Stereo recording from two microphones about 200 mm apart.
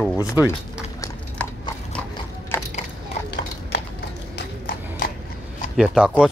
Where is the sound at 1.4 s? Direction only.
5° left (ahead or behind).